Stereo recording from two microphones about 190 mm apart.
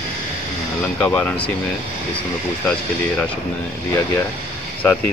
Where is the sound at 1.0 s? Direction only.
10° left (ahead or behind).